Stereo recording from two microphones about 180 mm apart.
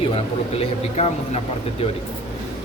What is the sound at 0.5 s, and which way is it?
Speech, 35° left (ahead or behind).